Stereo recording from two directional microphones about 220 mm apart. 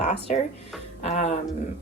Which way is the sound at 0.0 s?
30° left (ahead or behind).